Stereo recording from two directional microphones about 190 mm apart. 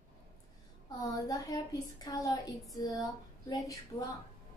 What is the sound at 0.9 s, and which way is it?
A woman's voice, 20° left (ahead or behind).